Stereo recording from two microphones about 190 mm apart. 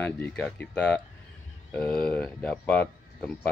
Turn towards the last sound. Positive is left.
turn(degrees=5)  # may be behind; listen again after turning